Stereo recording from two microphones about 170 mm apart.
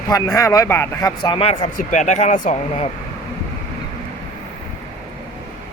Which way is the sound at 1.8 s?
45° left (ahead or behind).